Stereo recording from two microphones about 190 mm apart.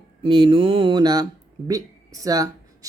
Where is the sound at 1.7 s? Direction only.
20° right (ahead or behind).